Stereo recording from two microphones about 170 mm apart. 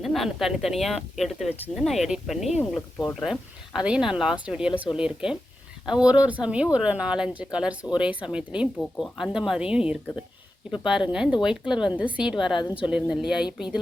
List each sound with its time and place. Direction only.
0.0 s speech: centre (ahead or behind)
11.1 s speech: 5° right (ahead or behind)
12.5 s speech: 30° left (ahead or behind)
12.8 s speech: 5° right (ahead or behind)